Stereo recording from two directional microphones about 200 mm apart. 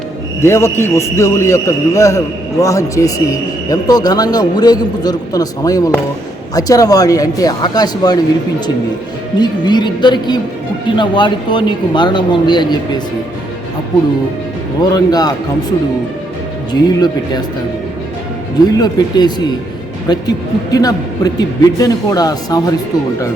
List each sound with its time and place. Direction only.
0.4 s a man's voice: 10° left (ahead or behind)
9.4 s a man's voice: 20° left (ahead or behind)
14.8 s a man's voice: 20° left (ahead or behind)
16.8 s a man's voice: 20° left (ahead or behind)
18.7 s a man's voice: 20° left (ahead or behind)